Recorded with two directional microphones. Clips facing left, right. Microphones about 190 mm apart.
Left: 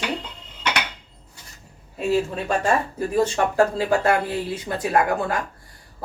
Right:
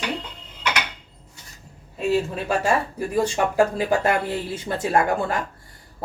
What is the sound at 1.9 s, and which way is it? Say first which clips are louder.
Speech: even; centre (ahead or behind).